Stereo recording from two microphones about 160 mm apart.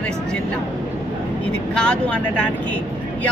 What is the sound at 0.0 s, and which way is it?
Vehicle, 5° left (ahead or behind).